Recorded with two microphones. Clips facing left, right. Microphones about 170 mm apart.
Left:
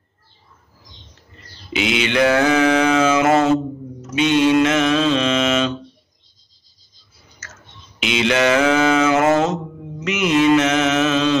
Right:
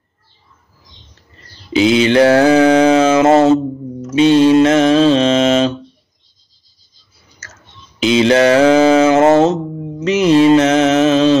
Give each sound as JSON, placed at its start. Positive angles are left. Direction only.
{"t": 1.7, "sound": "mantra", "side_deg": -35}
{"t": 8.0, "sound": "mantra", "side_deg": -35}